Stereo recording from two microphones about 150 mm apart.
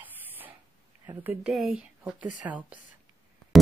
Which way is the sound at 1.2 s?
5° right (ahead or behind).